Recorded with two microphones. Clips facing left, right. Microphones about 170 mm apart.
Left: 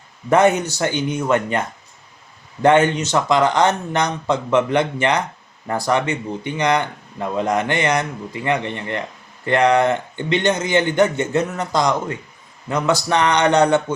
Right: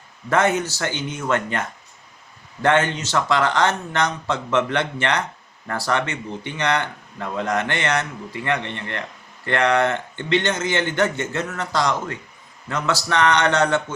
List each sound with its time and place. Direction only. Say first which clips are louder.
0.3 s speech: left 5 dB; 15° left (ahead or behind)